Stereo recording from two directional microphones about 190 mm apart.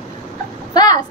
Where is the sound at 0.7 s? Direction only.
20° left (ahead or behind).